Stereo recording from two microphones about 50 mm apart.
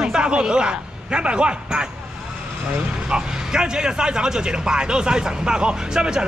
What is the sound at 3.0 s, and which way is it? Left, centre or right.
A man's voice, centre.